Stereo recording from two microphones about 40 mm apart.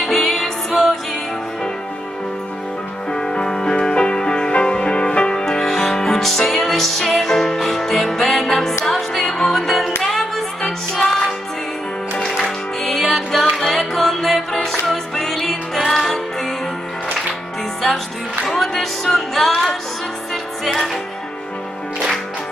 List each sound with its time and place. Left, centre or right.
0.0 s music: centre
3.1 s music: centre
5.5 s music: centre
12.4 s music: centre
18.4 s music: centre
20.7 s music: centre